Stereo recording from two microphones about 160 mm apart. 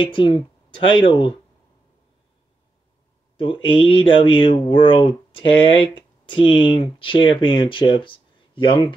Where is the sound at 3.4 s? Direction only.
30° left (ahead or behind).